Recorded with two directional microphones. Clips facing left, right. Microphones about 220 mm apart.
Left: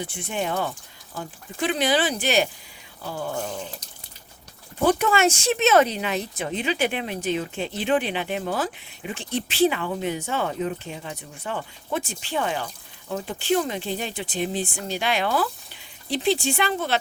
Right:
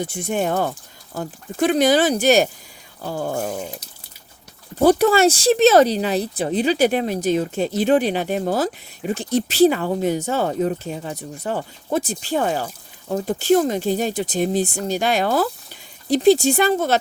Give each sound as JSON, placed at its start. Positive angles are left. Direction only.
{"t": 0.0, "sound": "speech", "side_deg": -45}
{"t": 4.8, "sound": "speech", "side_deg": -40}